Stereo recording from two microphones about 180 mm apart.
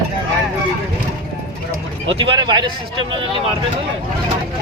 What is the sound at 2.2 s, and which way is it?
Speech, 25° right (ahead or behind).